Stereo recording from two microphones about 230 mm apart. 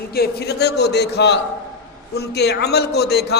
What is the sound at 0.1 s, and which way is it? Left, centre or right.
A man's voice, left.